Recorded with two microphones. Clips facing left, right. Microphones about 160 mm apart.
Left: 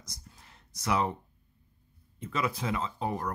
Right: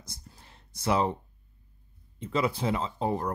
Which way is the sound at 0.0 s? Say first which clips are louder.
Right 3 dB; 30° right (ahead or behind).